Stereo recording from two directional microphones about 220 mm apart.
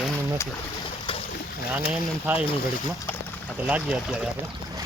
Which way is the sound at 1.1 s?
25° left (ahead or behind).